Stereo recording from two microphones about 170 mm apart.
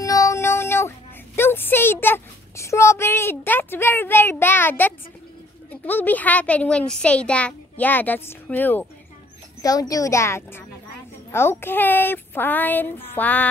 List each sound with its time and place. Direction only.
0.0 s a sound: 20° left (ahead or behind)
5.7 s a child's voice: 10° left (ahead or behind)
9.6 s a woman's voice: 20° left (ahead or behind)